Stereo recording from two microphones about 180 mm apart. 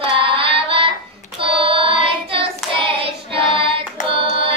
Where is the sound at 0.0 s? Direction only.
30° right (ahead or behind).